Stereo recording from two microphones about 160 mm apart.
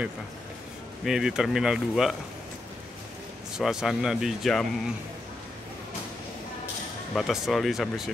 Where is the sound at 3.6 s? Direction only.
5° right (ahead or behind).